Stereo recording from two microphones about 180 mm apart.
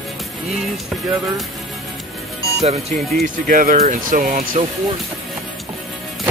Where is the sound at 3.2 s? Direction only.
50° right (ahead or behind).